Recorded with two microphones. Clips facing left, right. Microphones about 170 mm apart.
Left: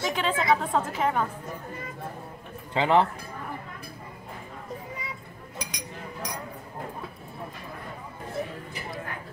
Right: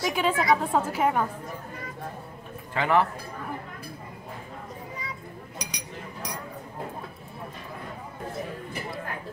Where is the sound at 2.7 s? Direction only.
20° left (ahead or behind).